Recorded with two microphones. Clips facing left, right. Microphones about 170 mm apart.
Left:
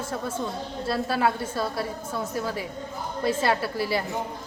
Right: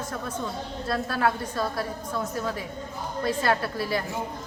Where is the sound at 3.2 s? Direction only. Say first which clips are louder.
Left 1 dB; 25° left (ahead or behind).